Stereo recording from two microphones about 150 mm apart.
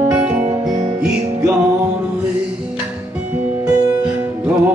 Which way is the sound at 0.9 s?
5° right (ahead or behind).